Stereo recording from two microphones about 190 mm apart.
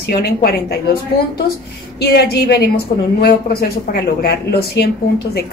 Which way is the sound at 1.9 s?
60° left (ahead or behind).